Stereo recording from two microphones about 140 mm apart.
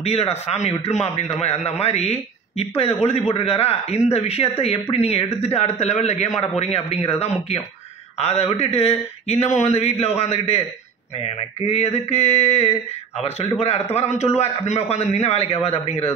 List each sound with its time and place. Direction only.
0.0 s a man's voice: 45° left (ahead or behind)